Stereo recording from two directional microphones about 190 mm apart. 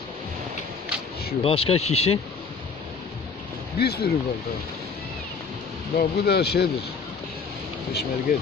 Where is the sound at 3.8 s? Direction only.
55° left (ahead or behind).